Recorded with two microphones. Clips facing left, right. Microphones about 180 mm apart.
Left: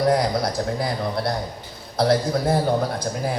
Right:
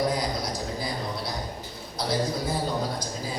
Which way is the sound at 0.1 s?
65° left (ahead or behind).